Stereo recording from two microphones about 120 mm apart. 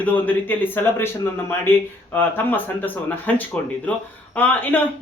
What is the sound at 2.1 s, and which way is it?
Speech, 15° left (ahead or behind).